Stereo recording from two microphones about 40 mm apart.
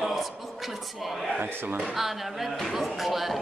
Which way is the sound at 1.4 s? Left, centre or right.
Right.